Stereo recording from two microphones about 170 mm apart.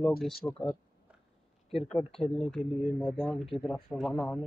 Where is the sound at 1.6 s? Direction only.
35° left (ahead or behind).